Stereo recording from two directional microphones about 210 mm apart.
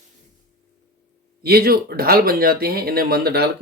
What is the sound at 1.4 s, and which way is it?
Speech, 45° right (ahead or behind).